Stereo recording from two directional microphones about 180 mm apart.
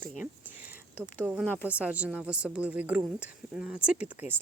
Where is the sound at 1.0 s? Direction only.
5° right (ahead or behind).